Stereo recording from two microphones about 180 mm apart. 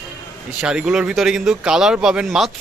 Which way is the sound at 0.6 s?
5° right (ahead or behind).